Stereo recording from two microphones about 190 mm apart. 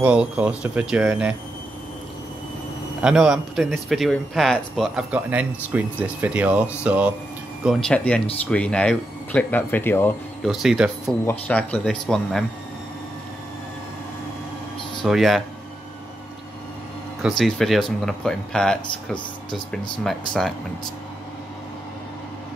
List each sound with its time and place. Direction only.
0.0 s speech: 5° right (ahead or behind)
3.0 s speech: 5° right (ahead or behind)
7.6 s speech: 5° left (ahead or behind)
10.4 s speech: centre (ahead or behind)
15.0 s speech: centre (ahead or behind)
17.4 s speech: centre (ahead or behind)
20.0 s speech: centre (ahead or behind)